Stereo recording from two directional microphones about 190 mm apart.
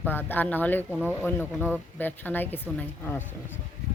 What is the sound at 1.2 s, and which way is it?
Speech, 10° left (ahead or behind).